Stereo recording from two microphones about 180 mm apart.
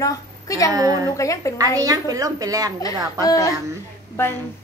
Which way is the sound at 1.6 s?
20° right (ahead or behind).